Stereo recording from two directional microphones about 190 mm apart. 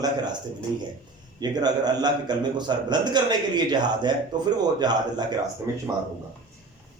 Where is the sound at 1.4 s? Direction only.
20° right (ahead or behind).